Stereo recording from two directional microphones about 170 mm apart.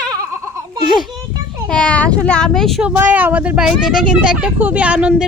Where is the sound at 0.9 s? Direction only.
Centre (ahead or behind).